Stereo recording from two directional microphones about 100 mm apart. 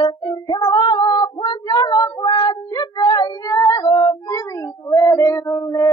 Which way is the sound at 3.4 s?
35° left (ahead or behind).